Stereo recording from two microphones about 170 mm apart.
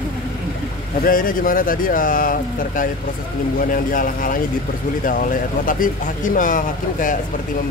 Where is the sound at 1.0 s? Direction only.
55° left (ahead or behind).